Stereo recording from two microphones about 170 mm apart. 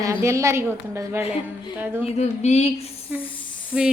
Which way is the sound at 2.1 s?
40° left (ahead or behind).